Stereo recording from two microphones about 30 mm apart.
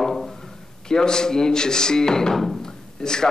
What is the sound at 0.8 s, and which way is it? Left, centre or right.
A man's voice, left.